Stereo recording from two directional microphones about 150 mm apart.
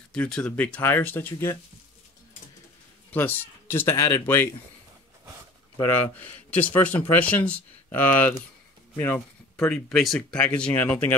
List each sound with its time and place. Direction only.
0.1 s speech: 5° left (ahead or behind)
3.1 s speech: 15° left (ahead or behind)
6.6 s speech: 10° left (ahead or behind)